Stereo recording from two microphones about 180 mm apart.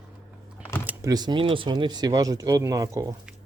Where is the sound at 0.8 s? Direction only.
20° right (ahead or behind).